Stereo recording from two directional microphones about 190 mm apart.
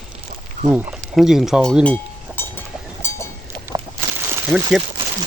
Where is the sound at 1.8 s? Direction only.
10° left (ahead or behind).